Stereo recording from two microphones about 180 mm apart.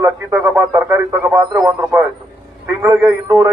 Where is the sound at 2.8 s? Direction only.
15° right (ahead or behind).